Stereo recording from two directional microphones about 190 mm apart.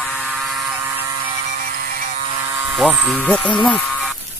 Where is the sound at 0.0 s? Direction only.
5° left (ahead or behind).